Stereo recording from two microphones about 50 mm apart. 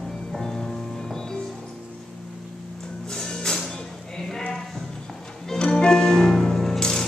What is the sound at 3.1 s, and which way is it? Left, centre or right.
Music, centre.